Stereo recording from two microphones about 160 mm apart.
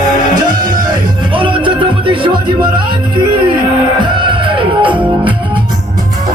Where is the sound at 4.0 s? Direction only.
30° right (ahead or behind).